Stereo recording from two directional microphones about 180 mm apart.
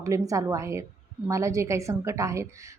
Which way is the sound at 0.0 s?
20° right (ahead or behind).